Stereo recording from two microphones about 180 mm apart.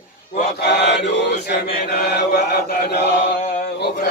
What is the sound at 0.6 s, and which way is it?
Chant, 70° left (ahead or behind).